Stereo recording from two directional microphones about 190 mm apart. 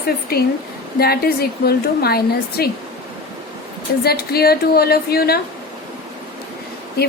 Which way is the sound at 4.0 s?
55° left (ahead or behind).